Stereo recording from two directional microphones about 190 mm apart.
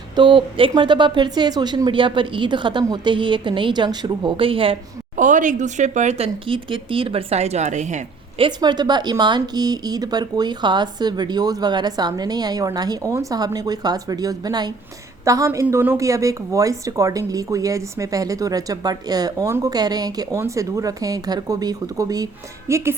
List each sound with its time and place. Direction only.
0.2 s speech: 25° right (ahead or behind)
5.1 s a woman's voice: 40° right (ahead or behind)
8.4 s a woman's voice: 20° right (ahead or behind)